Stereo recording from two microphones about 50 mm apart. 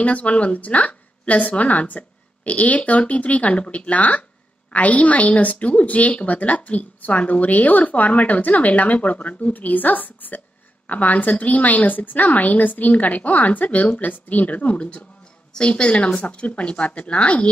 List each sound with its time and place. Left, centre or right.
0.0 s a woman's voice: left